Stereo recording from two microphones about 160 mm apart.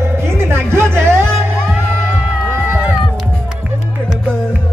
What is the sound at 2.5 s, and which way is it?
Run, 15° right (ahead or behind).